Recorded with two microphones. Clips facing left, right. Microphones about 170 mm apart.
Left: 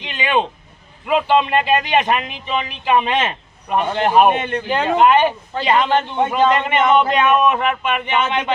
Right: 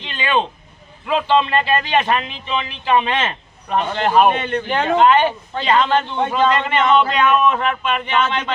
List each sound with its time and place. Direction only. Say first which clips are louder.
0.0 s a sound: left 1 dB; 15° left (ahead or behind)
1.0 s a man's voice: left 1 dB; 10° left (ahead or behind)
4.7 s a man's voice: even; 5° left (ahead or behind)